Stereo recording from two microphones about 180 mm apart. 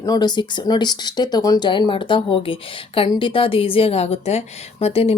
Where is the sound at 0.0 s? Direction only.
20° left (ahead or behind).